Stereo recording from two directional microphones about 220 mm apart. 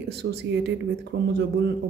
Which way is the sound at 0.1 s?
50° right (ahead or behind).